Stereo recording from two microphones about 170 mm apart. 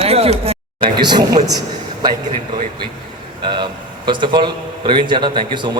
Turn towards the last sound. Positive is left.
turn(degrees=-25)  # may be behind; listen again after turning